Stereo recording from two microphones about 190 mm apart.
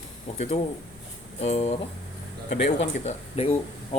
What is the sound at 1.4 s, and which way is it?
Speech, 35° left (ahead or behind).